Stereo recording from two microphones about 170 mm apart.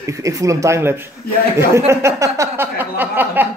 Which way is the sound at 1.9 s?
15° right (ahead or behind).